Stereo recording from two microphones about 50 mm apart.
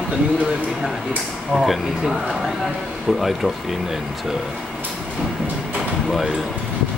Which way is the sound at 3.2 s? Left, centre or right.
Centre.